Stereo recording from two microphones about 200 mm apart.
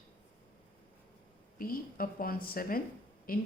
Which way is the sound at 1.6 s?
45° left (ahead or behind).